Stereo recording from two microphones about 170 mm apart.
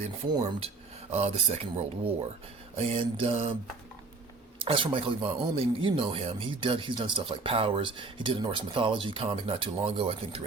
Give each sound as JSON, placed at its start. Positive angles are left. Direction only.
{"t": 0.3, "sound": "speech", "side_deg": -25}
{"t": 4.6, "sound": "speech", "side_deg": -30}